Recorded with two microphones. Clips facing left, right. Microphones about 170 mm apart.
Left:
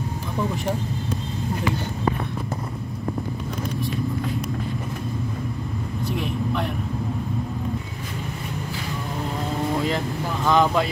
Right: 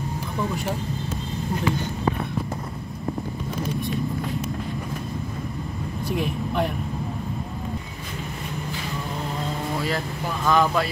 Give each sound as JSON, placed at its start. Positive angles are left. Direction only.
{"t": 6.2, "sound": "vehicle", "side_deg": -40}
{"t": 9.8, "sound": "speech", "side_deg": 20}